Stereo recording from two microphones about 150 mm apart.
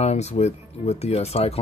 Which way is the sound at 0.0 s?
45° left (ahead or behind).